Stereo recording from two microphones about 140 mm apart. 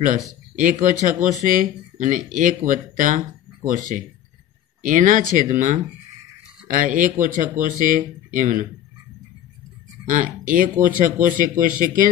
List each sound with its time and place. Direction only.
0.6 s speech: 65° right (ahead or behind)
10.0 s speech: 75° right (ahead or behind)